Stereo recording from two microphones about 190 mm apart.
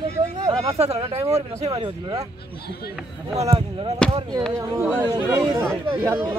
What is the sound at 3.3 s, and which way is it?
Speech, 30° right (ahead or behind).